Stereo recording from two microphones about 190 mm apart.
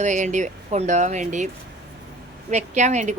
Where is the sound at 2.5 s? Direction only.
40° right (ahead or behind).